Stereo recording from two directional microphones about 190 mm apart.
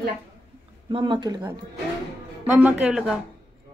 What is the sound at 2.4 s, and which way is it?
Speech, 5° right (ahead or behind).